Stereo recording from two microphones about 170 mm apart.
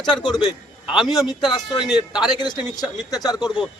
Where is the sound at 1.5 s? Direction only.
25° left (ahead or behind).